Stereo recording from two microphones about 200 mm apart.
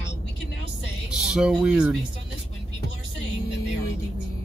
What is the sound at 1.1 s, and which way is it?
Speech, 5° right (ahead or behind).